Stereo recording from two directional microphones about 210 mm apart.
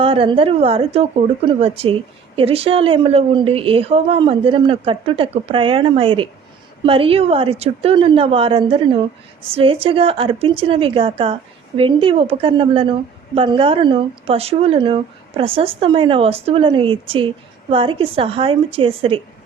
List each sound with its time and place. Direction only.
0.0 s speech: 25° right (ahead or behind)